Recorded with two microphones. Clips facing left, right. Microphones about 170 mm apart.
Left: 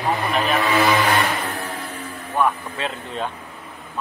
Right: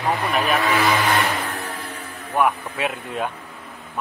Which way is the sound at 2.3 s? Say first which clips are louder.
Right 1 dB; 10° right (ahead or behind).